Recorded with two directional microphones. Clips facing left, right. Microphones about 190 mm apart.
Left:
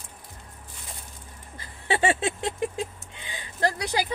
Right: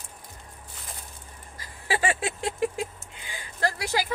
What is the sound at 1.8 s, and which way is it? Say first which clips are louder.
Speech: left 3 dB; 25° left (ahead or behind).